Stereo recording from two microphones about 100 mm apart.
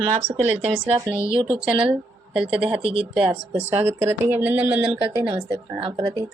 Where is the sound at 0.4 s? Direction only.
15° right (ahead or behind).